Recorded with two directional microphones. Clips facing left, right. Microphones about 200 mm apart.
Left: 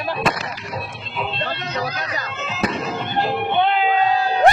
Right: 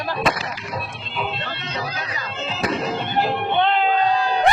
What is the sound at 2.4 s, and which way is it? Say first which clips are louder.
Music: right 1 dB; 30° right (ahead or behind).